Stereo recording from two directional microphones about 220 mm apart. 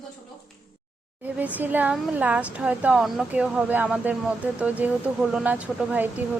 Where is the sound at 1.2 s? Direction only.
5° right (ahead or behind).